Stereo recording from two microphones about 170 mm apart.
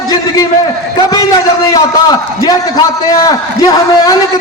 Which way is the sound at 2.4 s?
20° left (ahead or behind).